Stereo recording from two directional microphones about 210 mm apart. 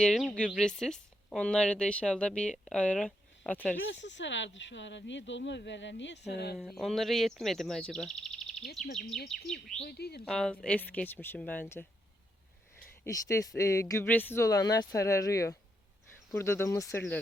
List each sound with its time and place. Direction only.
0.0 s speech: centre (ahead or behind)
4.0 s speech: 60° left (ahead or behind)
6.6 s speech: centre (ahead or behind)
9.8 s speech: 50° left (ahead or behind)
10.2 s speech: centre (ahead or behind)
13.1 s speech: 15° left (ahead or behind)